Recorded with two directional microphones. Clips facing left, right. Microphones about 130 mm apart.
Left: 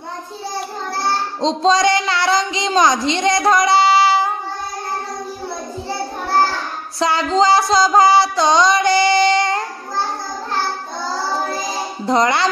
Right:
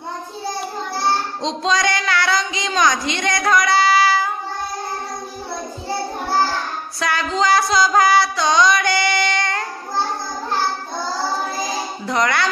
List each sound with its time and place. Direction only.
1.4 s speech: 30° left (ahead or behind)
7.0 s a sound: 25° left (ahead or behind)
12.1 s speech: 25° left (ahead or behind)